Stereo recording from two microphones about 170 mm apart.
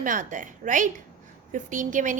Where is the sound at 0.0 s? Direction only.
50° right (ahead or behind).